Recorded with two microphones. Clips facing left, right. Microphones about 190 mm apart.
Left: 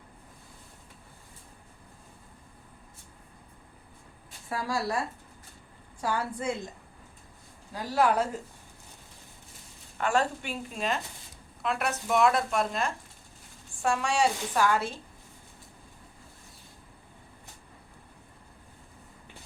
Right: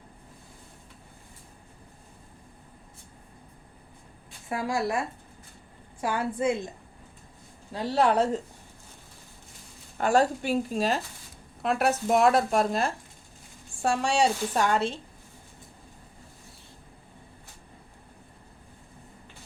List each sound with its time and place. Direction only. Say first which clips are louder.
4.4 s a woman's voice: right 3 dB; 20° right (ahead or behind)
7.7 s a woman's voice: right 2 dB; 25° right (ahead or behind)
10.0 s a woman's voice: right 5 dB; 40° right (ahead or behind)